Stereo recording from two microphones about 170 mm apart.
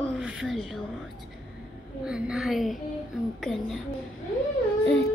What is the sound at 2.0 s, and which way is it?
A woman's voice, 5° right (ahead or behind).